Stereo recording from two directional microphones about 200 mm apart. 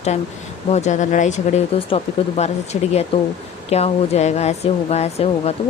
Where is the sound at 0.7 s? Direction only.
35° left (ahead or behind).